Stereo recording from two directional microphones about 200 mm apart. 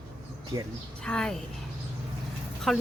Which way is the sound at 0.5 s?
25° right (ahead or behind).